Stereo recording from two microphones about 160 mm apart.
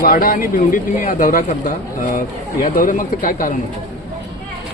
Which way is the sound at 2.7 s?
60° left (ahead or behind).